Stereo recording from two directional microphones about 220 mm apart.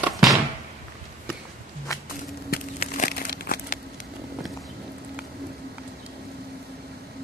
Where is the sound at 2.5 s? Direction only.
40° left (ahead or behind).